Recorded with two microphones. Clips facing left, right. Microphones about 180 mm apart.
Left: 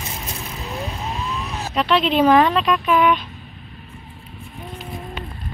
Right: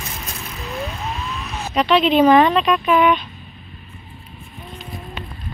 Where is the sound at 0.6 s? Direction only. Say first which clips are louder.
Right 2 dB; 20° left (ahead or behind).